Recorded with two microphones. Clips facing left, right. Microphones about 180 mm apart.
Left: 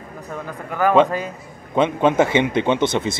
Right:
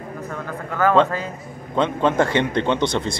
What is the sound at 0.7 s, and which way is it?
Speech, 15° left (ahead or behind).